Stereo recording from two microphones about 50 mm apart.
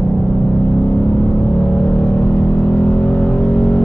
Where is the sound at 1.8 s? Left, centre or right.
Centre.